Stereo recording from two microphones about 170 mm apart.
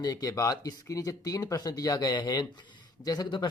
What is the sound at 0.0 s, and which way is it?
Speech, 20° left (ahead or behind).